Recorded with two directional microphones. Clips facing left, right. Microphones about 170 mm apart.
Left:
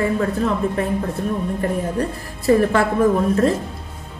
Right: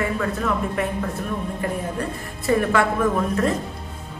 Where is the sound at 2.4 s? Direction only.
35° left (ahead or behind).